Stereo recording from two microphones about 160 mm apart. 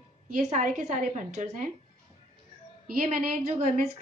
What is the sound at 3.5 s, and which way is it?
Speech, 45° right (ahead or behind).